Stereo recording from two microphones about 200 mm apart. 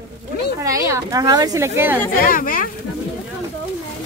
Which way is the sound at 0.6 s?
15° right (ahead or behind).